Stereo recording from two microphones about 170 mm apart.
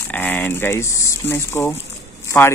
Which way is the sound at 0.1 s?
10° left (ahead or behind).